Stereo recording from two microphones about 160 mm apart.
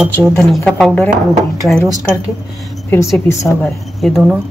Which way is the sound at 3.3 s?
15° left (ahead or behind).